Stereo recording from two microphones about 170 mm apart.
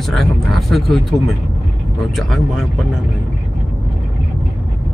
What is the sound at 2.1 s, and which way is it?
Speech, centre (ahead or behind).